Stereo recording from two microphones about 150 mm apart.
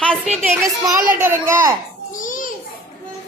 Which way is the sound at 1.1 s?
15° right (ahead or behind).